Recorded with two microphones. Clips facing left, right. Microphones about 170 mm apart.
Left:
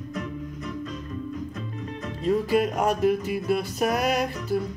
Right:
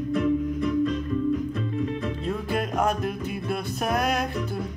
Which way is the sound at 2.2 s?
Centre (ahead or behind).